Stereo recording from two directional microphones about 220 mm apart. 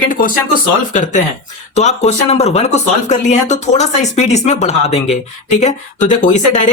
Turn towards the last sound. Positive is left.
turn(degrees=35)  # may be behind; listen again after turning